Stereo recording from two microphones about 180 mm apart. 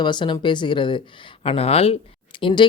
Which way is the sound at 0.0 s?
25° left (ahead or behind).